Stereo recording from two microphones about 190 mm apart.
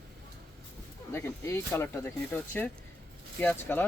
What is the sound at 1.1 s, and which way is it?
Speech, 10° left (ahead or behind).